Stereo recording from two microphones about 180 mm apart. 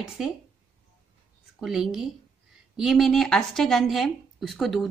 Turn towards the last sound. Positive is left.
turn(degrees=0)  # may be behind; listen again after turning